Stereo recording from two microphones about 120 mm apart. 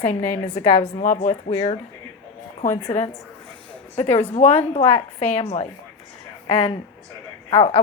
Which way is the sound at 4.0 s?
65° left (ahead or behind).